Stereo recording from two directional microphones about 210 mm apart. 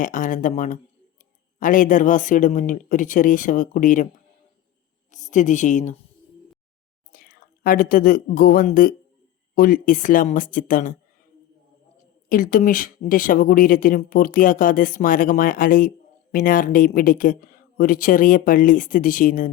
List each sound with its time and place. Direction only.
0.0 s speech: 40° left (ahead or behind)
5.1 s a woman's voice: 35° left (ahead or behind)
7.1 s a woman's voice: 45° left (ahead or behind)
12.3 s speech: 40° left (ahead or behind)